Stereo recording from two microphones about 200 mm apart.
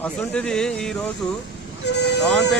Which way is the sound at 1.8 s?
60° left (ahead or behind).